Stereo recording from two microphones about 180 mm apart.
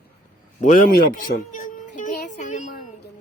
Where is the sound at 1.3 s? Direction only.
45° left (ahead or behind).